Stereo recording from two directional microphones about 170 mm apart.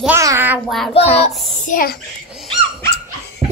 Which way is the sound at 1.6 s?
55° left (ahead or behind).